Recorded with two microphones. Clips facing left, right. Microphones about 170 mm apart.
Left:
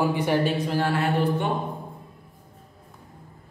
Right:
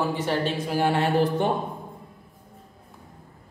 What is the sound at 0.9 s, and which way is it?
Mantra, 30° right (ahead or behind).